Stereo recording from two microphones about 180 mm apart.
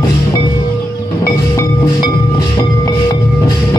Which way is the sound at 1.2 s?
20° left (ahead or behind).